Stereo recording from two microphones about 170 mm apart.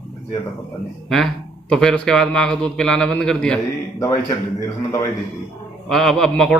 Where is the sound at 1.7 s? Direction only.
5° left (ahead or behind).